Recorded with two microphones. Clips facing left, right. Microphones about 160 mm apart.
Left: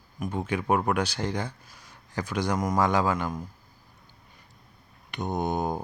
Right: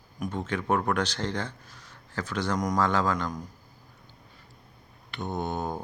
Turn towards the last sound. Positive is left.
turn(degrees=15)  # may be behind; listen again after turning